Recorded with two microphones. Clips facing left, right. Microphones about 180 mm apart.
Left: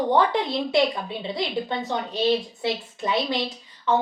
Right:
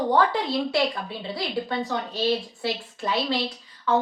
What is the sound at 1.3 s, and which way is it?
A woman's voice, 20° left (ahead or behind).